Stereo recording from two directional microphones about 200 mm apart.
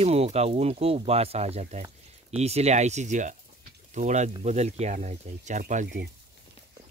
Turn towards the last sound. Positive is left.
turn(degrees=-40)  # may be behind; listen again after turning